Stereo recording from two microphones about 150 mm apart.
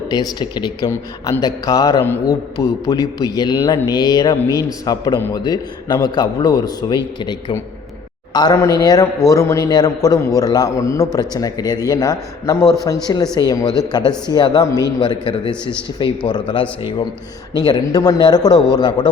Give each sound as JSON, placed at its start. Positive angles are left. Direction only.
{"t": 0.1, "sound": "a man's voice", "side_deg": 25}
{"t": 15.1, "sound": "a man's voice", "side_deg": 35}